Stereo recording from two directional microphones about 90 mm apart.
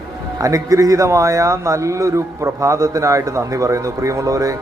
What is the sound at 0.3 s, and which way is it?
A man's voice, 35° right (ahead or behind).